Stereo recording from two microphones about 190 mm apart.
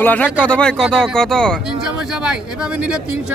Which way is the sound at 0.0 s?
10° left (ahead or behind).